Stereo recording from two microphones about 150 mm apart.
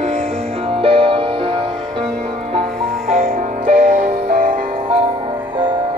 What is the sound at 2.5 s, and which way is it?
Music, 50° right (ahead or behind).